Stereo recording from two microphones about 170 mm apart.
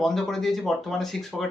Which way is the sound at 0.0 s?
Centre (ahead or behind).